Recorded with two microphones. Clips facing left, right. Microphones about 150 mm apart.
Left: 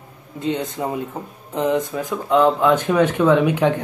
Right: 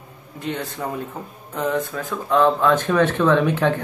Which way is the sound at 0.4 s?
20° left (ahead or behind).